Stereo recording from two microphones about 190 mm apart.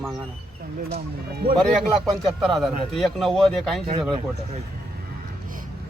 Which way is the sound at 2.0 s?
Centre (ahead or behind).